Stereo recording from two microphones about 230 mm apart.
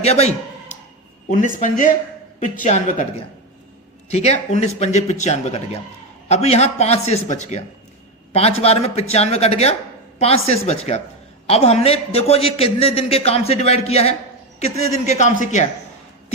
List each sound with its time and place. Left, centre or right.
0.0 s a man's voice: left